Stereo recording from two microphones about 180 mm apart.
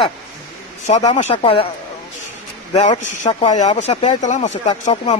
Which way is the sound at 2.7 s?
40° left (ahead or behind).